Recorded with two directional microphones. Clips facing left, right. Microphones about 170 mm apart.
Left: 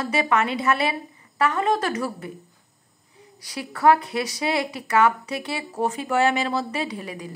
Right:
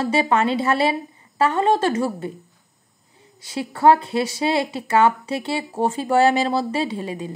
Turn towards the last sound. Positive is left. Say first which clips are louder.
# right 5 dB
turn(degrees=-25)  # may be behind; listen again after turning